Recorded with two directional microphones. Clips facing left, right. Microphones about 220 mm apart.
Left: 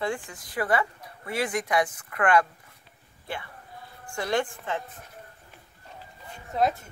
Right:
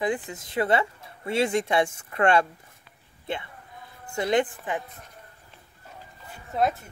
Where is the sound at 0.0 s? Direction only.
20° right (ahead or behind).